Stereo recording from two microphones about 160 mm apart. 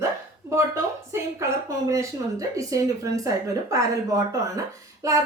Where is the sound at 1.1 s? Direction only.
20° right (ahead or behind).